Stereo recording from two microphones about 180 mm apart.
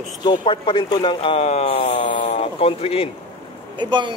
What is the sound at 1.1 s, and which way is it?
Speech, 35° left (ahead or behind).